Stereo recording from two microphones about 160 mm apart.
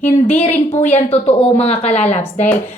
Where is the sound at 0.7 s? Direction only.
45° left (ahead or behind).